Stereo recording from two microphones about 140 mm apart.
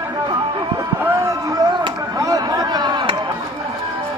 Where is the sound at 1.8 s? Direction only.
25° right (ahead or behind).